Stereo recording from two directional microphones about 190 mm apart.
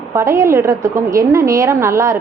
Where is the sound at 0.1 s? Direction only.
15° right (ahead or behind).